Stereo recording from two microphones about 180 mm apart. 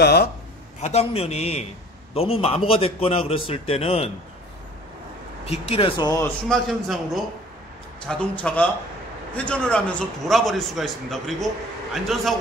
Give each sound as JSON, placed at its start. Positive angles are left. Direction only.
{"t": 0.0, "sound": "speech", "side_deg": 60}
{"t": 0.7, "sound": "a man's voice", "side_deg": 35}
{"t": 5.5, "sound": "speech", "side_deg": 30}
{"t": 6.5, "sound": "a man's voice", "side_deg": 0}